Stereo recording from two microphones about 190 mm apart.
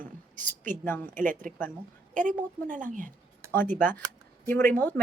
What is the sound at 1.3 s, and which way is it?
A woman's voice, 45° right (ahead or behind).